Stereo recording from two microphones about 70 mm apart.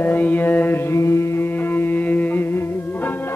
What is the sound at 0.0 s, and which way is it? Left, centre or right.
Mantra, left.